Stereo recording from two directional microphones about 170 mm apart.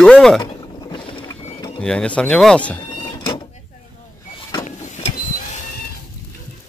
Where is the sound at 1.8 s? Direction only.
5° left (ahead or behind).